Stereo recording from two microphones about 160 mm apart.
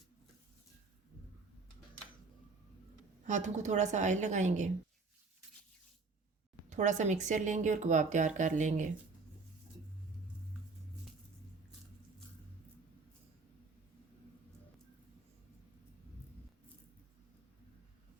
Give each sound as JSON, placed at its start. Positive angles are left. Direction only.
{"t": 3.2, "sound": "speech", "side_deg": -50}
{"t": 6.7, "sound": "speech", "side_deg": -50}